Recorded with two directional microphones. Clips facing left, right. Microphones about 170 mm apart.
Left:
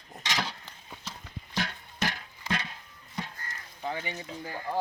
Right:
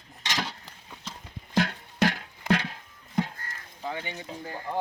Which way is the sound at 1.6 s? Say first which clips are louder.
Right 8 dB; 60° right (ahead or behind).